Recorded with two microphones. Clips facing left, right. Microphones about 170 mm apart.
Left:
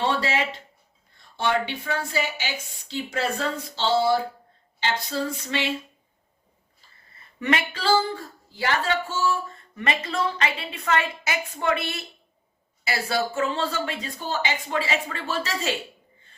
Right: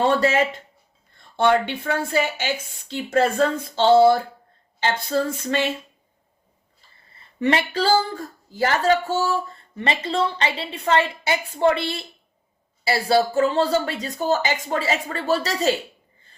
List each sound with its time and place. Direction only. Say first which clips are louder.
0.0 s speech: right 6 dB; 45° right (ahead or behind)
7.3 s speech: right 5 dB; 30° right (ahead or behind)